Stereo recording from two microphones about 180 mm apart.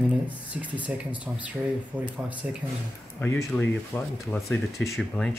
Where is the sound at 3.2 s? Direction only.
15° left (ahead or behind).